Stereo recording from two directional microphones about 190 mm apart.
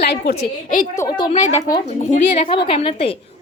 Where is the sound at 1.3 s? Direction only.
40° left (ahead or behind).